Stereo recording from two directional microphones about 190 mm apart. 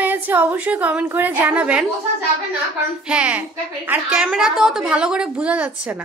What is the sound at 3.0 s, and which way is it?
A woman's voice, 5° right (ahead or behind).